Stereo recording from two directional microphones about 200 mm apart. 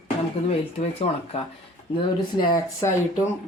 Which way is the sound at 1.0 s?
35° left (ahead or behind).